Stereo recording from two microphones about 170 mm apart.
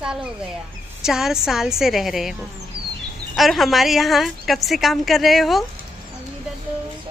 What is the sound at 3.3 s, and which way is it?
A woman's voice, centre (ahead or behind).